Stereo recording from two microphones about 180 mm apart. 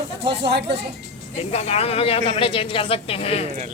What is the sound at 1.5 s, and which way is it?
Speech, 35° left (ahead or behind).